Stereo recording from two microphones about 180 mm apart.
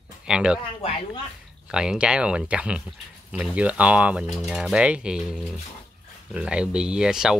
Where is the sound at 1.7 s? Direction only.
5° right (ahead or behind).